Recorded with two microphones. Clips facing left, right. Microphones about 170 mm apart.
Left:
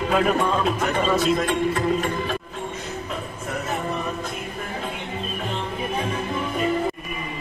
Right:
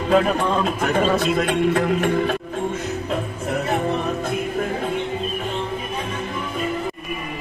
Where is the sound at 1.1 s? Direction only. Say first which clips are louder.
Right 1 dB; 65° right (ahead or behind).